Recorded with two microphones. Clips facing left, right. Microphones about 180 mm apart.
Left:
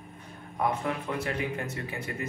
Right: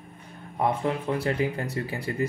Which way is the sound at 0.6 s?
30° right (ahead or behind).